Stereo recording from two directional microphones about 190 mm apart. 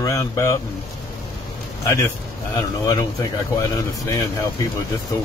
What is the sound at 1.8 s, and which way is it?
Speech, 15° left (ahead or behind).